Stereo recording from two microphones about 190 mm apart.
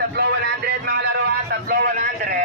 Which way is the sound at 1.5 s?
50° right (ahead or behind).